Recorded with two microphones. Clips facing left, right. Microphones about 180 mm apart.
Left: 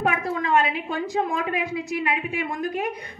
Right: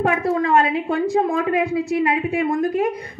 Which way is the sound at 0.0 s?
30° right (ahead or behind).